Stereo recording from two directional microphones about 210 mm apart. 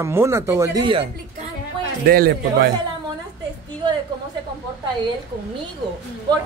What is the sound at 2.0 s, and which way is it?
Speech, 45° right (ahead or behind).